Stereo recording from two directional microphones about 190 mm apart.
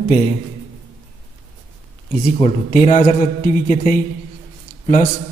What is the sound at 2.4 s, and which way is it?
A man's voice, 40° left (ahead or behind).